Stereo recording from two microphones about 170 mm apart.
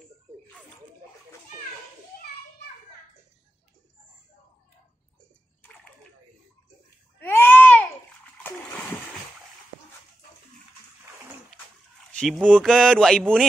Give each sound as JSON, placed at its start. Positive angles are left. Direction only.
{"t": 2.1, "sound": "children playing", "side_deg": 60}
{"t": 7.2, "sound": "a sound", "side_deg": 15}
{"t": 8.5, "sound": "splash", "side_deg": 15}
{"t": 12.1, "sound": "speech", "side_deg": 5}